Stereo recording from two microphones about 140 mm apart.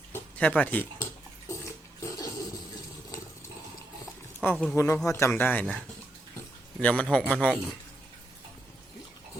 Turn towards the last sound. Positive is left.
turn(degrees=5)  # may be behind; listen again after turning